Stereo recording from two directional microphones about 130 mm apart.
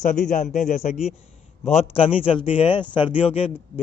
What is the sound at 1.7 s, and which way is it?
A man's voice, 50° left (ahead or behind).